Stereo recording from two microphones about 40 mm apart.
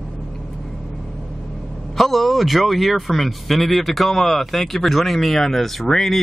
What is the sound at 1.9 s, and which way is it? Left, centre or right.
A man's voice, centre.